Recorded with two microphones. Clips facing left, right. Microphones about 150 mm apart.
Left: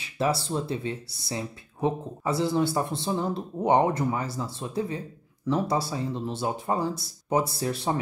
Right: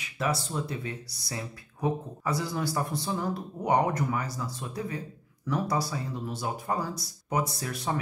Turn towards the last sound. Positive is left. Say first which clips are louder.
# left 5 dB
turn(degrees=30)  # may be behind; listen again after turning